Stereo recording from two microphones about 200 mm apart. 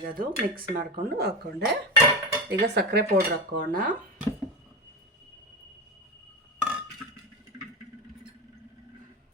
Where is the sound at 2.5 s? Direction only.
55° right (ahead or behind).